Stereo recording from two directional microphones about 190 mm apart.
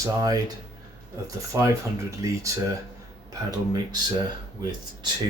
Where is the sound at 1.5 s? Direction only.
15° right (ahead or behind).